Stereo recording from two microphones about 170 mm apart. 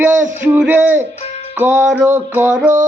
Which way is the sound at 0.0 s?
10° right (ahead or behind).